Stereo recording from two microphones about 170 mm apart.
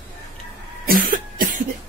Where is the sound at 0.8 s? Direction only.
55° right (ahead or behind).